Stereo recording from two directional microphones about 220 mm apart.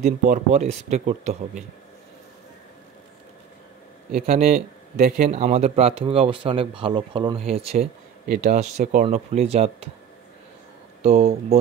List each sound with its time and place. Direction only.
0.0 s speech: 35° right (ahead or behind)
4.1 s speech: 30° right (ahead or behind)